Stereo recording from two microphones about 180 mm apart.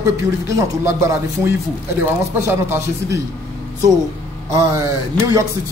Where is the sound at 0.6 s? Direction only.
15° right (ahead or behind).